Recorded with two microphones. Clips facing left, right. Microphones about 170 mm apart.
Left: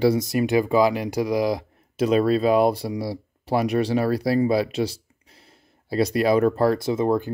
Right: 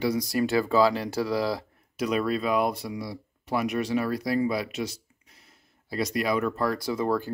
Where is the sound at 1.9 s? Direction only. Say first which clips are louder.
Left 7 dB; 30° left (ahead or behind).